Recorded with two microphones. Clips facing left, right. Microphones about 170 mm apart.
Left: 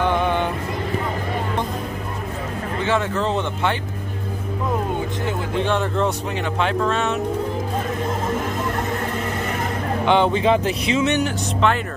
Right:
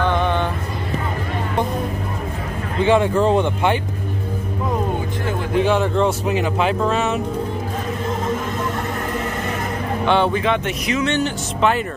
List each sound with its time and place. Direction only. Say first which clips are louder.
0.0 s music: right 1 dB; 10° left (ahead or behind)
2.8 s speech: right 7 dB; 15° right (ahead or behind)
5.6 s speech: right 4 dB; 5° right (ahead or behind)
10.0 s speech: even; 15° left (ahead or behind)
10.4 s speech: left 2 dB; 30° left (ahead or behind)